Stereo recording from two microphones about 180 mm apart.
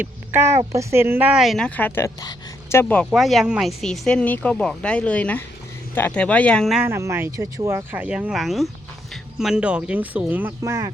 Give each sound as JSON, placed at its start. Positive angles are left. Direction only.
{"t": 0.0, "sound": "speech", "side_deg": -15}
{"t": 3.1, "sound": "speech", "side_deg": 0}
{"t": 6.8, "sound": "speech", "side_deg": -15}